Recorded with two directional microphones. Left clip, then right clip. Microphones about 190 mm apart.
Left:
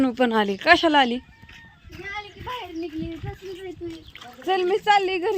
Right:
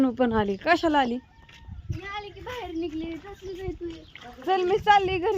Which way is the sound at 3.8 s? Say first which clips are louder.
Left 2 dB; 45° left (ahead or behind).